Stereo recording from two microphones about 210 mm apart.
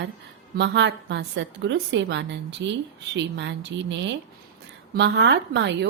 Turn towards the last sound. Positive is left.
turn(degrees=-55)  # may be behind; listen again after turning